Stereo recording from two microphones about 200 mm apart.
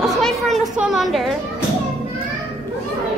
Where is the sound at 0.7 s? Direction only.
5° right (ahead or behind).